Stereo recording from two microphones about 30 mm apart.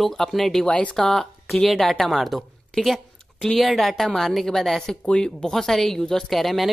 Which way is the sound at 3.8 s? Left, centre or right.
Centre.